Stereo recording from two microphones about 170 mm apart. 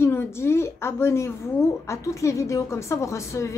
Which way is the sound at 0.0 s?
15° left (ahead or behind).